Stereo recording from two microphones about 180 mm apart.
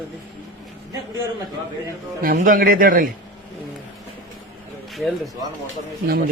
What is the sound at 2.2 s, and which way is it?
Speech, 45° right (ahead or behind).